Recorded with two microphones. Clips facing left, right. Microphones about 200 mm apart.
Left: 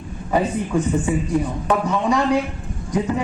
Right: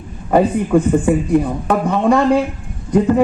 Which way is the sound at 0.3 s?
55° right (ahead or behind).